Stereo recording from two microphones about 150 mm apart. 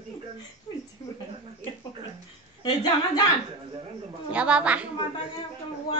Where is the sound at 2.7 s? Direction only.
30° left (ahead or behind).